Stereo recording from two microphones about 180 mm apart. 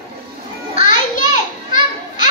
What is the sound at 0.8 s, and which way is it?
Children playing, 45° left (ahead or behind).